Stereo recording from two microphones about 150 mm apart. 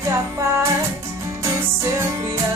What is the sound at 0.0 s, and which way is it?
Music, 20° right (ahead or behind).